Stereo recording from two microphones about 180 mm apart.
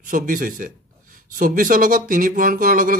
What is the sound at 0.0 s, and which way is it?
Speech, 50° right (ahead or behind).